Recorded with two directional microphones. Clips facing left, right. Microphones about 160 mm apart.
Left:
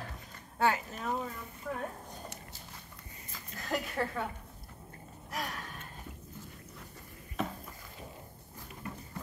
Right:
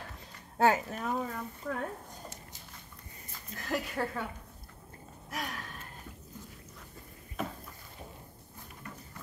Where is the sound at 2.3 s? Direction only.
65° left (ahead or behind).